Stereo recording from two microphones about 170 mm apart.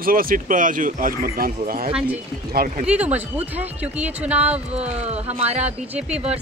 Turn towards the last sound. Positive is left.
turn(degrees=-40)  # may be behind; listen again after turning